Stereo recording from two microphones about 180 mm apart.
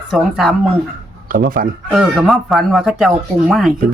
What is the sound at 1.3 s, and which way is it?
Speech, 50° right (ahead or behind).